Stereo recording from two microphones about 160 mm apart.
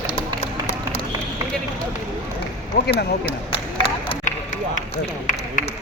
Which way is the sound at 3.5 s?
35° left (ahead or behind).